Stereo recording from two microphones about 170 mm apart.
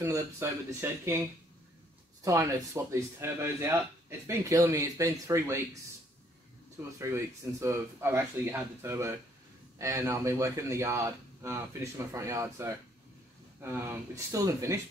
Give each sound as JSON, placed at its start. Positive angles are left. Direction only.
{"t": 0.0, "sound": "speech", "side_deg": -15}
{"t": 2.2, "sound": "speech", "side_deg": -20}
{"t": 7.0, "sound": "speech", "side_deg": -15}